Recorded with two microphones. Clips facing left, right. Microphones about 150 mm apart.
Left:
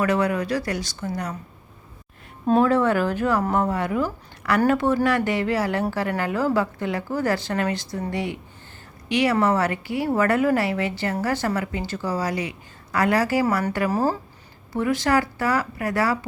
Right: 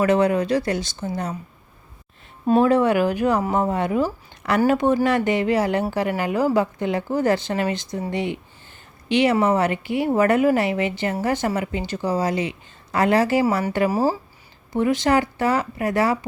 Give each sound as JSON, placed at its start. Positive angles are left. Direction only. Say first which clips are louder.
{"t": 0.0, "sound": "speech", "louder": "right 4 dB", "side_deg": -25}
{"t": 2.6, "sound": "speech", "louder": "right 2 dB", "side_deg": -15}
{"t": 13.9, "sound": "speech", "louder": "right 2 dB", "side_deg": -10}
{"t": 14.7, "sound": "speech", "louder": "right 2 dB", "side_deg": -20}